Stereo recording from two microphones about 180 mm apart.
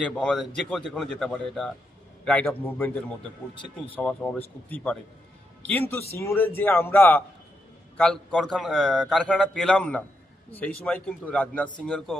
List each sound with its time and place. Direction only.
0.2 s a man's voice: 5° left (ahead or behind)